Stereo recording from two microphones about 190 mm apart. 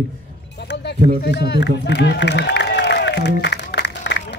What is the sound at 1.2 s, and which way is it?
Run, 60° left (ahead or behind).